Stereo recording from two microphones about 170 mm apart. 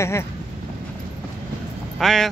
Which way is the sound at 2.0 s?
Centre (ahead or behind).